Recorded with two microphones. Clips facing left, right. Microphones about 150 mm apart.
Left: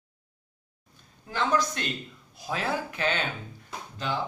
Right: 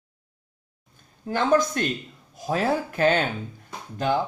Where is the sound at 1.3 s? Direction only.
50° right (ahead or behind).